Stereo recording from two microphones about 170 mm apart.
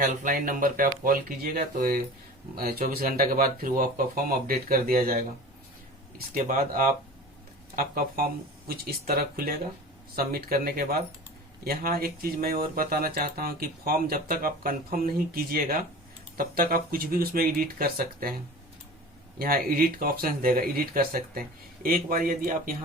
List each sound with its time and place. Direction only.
0.0 s speech: 50° right (ahead or behind)
6.1 s speech: 55° right (ahead or behind)
19.4 s speech: 55° right (ahead or behind)